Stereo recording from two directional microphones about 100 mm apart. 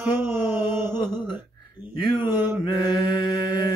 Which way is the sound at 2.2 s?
25° right (ahead or behind).